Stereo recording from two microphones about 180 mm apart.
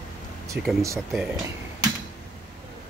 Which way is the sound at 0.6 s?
70° right (ahead or behind).